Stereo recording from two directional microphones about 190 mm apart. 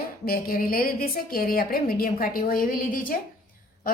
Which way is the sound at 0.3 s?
50° left (ahead or behind).